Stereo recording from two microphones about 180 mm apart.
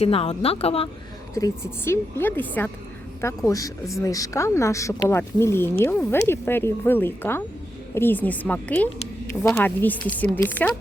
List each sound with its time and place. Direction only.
0.0 s speech: 35° left (ahead or behind)
1.3 s speech: 20° left (ahead or behind)